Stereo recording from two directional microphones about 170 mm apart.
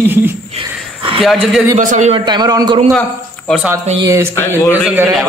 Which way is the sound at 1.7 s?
45° right (ahead or behind).